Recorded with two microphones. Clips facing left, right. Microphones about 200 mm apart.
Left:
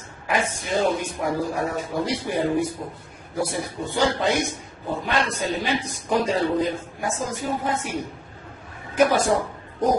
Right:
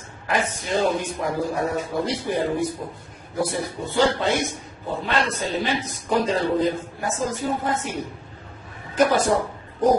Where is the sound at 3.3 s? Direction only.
15° left (ahead or behind).